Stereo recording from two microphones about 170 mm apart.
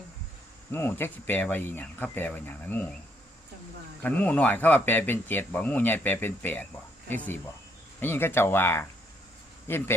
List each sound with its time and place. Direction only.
0.7 s speech: 15° left (ahead or behind)
4.0 s speech: 10° left (ahead or behind)